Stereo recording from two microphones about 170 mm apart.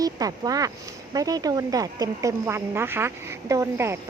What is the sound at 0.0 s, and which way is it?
Speech, 20° right (ahead or behind).